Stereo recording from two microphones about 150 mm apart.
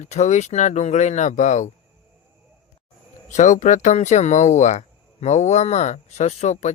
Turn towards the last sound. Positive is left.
turn(degrees=50)  # may be behind; listen again after turning